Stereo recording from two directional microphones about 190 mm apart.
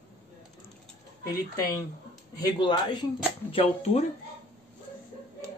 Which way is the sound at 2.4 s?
25° left (ahead or behind).